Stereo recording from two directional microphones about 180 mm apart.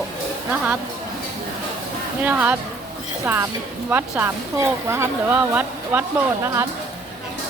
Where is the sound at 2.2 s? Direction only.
10° right (ahead or behind).